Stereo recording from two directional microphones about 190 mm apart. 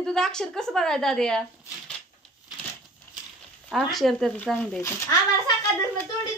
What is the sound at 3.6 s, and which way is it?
A child's voice, centre (ahead or behind).